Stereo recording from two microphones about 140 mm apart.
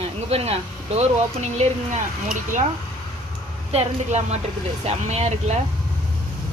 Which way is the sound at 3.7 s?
50° right (ahead or behind).